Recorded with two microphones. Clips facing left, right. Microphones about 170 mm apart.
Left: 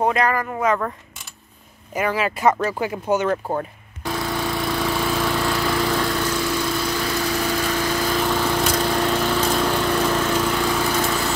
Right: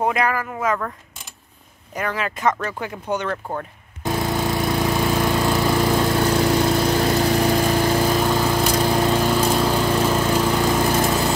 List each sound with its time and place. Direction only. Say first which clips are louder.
0.0 s speech: left 1 dB; 10° right (ahead or behind)
2.0 s speech: left 3 dB; 5° left (ahead or behind)
4.0 s lawn mower: right 3 dB; 20° right (ahead or behind)
6.1 s lawn mower: right 5 dB; 35° right (ahead or behind)
8.1 s lawn mower: right 2 dB; 15° right (ahead or behind)